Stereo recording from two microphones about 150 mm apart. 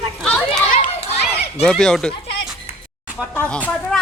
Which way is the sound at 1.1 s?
45° left (ahead or behind).